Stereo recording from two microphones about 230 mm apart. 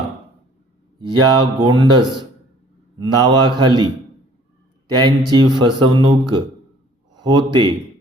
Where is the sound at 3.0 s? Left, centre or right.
Centre.